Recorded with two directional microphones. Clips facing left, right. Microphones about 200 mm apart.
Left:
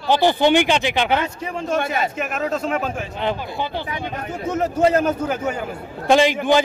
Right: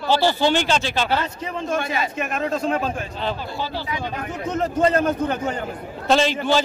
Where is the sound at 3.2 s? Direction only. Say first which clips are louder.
Left 5 dB; 15° left (ahead or behind).